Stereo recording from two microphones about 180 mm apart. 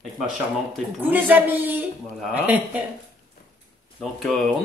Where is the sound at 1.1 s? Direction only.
10° right (ahead or behind).